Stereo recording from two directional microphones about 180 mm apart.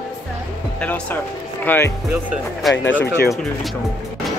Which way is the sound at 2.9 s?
80° left.